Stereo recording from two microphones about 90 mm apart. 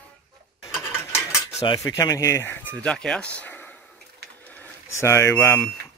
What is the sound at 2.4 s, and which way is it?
Speech, 25° left (ahead or behind).